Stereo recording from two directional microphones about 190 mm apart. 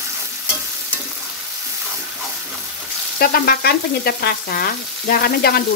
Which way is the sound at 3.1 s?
50° left (ahead or behind).